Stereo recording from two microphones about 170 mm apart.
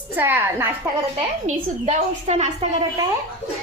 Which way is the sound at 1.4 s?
40° right (ahead or behind).